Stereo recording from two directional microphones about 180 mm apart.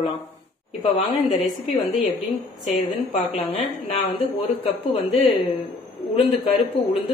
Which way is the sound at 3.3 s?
35° left (ahead or behind).